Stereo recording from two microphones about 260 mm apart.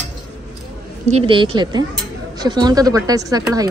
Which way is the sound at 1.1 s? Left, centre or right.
Centre.